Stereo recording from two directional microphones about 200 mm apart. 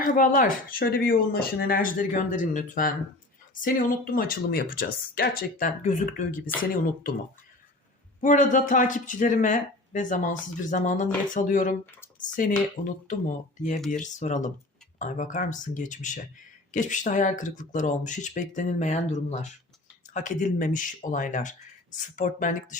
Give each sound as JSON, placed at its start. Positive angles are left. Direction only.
{"t": 0.0, "sound": "speech", "side_deg": 40}
{"t": 8.2, "sound": "speech", "side_deg": 40}
{"t": 14.0, "sound": "speech", "side_deg": 35}